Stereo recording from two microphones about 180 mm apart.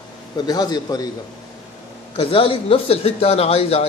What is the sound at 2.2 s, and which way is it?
Speech, 30° left (ahead or behind).